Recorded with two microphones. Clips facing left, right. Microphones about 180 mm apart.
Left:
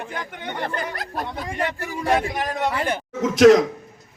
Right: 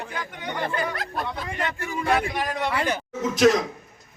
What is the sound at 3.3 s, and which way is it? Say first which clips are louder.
Speech: left 7 dB; 90° left.